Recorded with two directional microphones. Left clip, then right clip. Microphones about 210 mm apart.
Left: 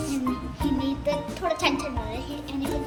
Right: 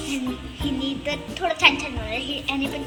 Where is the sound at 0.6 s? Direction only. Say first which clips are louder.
Even; 10° left (ahead or behind).